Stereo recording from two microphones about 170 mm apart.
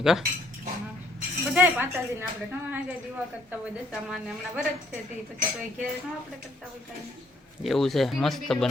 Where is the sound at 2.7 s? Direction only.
10° right (ahead or behind).